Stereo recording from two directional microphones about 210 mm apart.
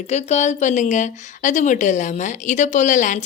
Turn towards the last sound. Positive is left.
turn(degrees=35)  # may be behind; listen again after turning